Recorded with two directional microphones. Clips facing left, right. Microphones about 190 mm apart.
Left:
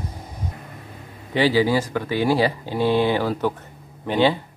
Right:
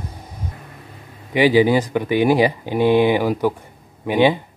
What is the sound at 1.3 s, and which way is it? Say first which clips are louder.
Speech: right 4 dB; 15° right (ahead or behind).